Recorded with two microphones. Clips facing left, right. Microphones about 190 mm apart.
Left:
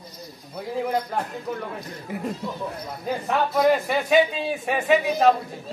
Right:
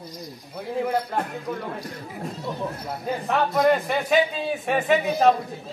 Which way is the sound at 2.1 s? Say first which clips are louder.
Left 5 dB; 65° left (ahead or behind).